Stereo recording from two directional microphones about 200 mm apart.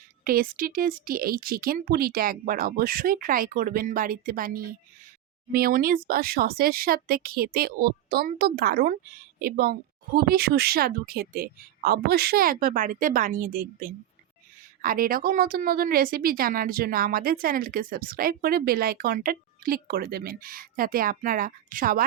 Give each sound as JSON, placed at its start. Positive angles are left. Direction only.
{"t": 0.3, "sound": "a woman's voice", "side_deg": -45}